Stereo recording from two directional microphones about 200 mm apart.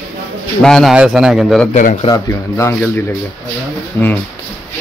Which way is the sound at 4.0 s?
10° left (ahead or behind).